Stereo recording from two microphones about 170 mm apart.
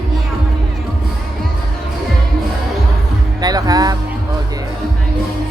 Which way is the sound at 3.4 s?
20° right (ahead or behind).